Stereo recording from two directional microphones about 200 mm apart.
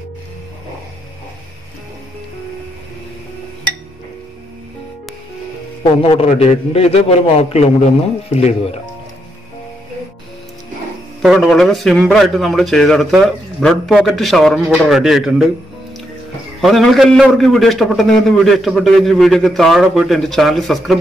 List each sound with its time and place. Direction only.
6.0 s a man's voice: 30° left (ahead or behind)
11.2 s a man's voice: centre (ahead or behind)
16.6 s a man's voice: centre (ahead or behind)